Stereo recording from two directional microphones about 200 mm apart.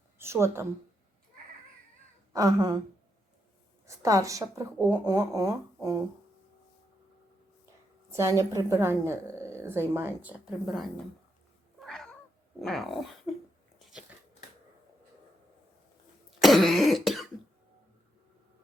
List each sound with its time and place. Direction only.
0.2 s speech: 15° right (ahead or behind)
2.3 s speech: 15° right (ahead or behind)
3.8 s speech: 15° right (ahead or behind)
8.1 s speech: 15° right (ahead or behind)
9.6 s a sound: 10° right (ahead or behind)
9.9 s a woman's voice: 10° right (ahead or behind)
11.8 s cat: centre (ahead or behind)
12.5 s a woman's voice: centre (ahead or behind)
16.4 s cough: centre (ahead or behind)